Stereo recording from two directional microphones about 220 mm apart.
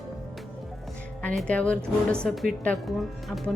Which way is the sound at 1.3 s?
5° left (ahead or behind).